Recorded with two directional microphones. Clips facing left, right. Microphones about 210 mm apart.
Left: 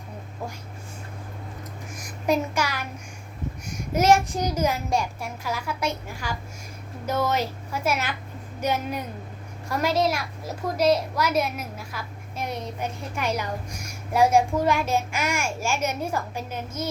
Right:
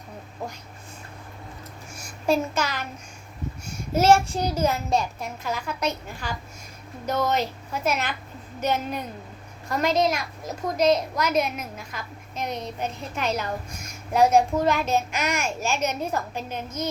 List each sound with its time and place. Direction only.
2.0 s a sound: 15° left (ahead or behind)
3.9 s child singing: 30° right (ahead or behind)
4.5 s a woman's voice: 10° left (ahead or behind)
10.6 s child singing: 20° right (ahead or behind)
11.5 s a woman's voice: 5° left (ahead or behind)